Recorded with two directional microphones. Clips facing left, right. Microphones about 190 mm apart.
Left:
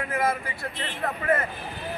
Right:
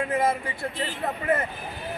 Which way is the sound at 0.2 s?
25° right (ahead or behind).